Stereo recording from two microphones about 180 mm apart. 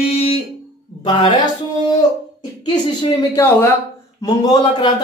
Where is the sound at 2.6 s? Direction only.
25° left (ahead or behind).